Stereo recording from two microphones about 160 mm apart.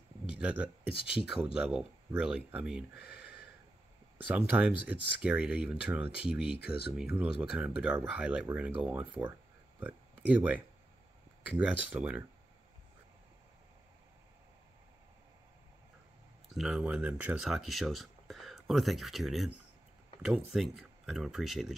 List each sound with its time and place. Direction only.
0.4 s speech: 10° right (ahead or behind)
0.8 s speech: 35° left (ahead or behind)
1.3 s speech: 5° right (ahead or behind)
4.3 s speech: 10° right (ahead or behind)
6.4 s speech: 35° left (ahead or behind)
7.0 s speech: 5° right (ahead or behind)
16.4 s speech: centre (ahead or behind)